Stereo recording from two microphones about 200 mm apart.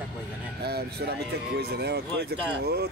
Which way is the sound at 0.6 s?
55° right (ahead or behind).